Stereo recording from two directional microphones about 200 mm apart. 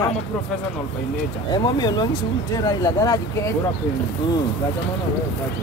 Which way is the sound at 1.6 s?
20° left (ahead or behind).